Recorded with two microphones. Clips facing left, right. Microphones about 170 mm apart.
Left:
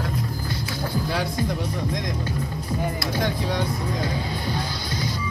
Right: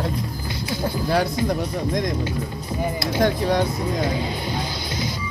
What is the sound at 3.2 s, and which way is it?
Speech, 50° right (ahead or behind).